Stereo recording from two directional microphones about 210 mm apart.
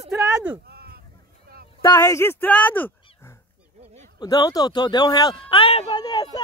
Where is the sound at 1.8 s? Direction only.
15° left (ahead or behind).